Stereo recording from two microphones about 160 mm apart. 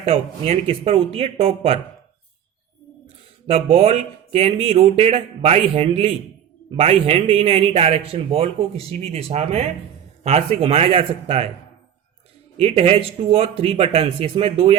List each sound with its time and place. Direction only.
0.0 s a man's voice: 40° right (ahead or behind)
3.4 s a man's voice: 40° right (ahead or behind)
12.5 s a man's voice: 40° right (ahead or behind)